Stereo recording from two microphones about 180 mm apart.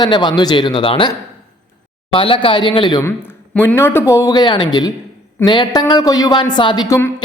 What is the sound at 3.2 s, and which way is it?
A man's voice, 10° left (ahead or behind).